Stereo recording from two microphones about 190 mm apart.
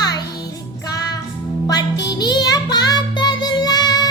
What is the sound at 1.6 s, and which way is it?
Music, 20° left (ahead or behind).